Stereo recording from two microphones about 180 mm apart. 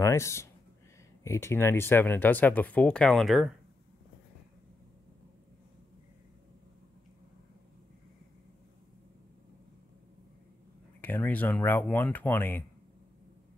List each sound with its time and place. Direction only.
0.0 s speech: 15° left (ahead or behind); by 3.5 s centre (ahead or behind)
11.0 s speech: 10° left (ahead or behind)